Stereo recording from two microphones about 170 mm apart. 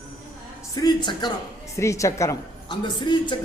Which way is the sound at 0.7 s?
25° left (ahead or behind).